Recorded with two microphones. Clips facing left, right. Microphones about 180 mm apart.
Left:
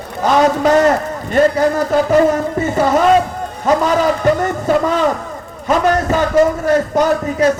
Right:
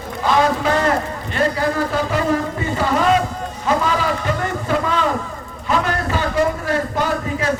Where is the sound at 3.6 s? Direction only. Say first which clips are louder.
Left 6 dB; 40° left (ahead or behind).